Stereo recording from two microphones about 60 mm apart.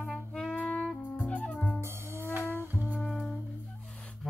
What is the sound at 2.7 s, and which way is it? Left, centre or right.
Music, right.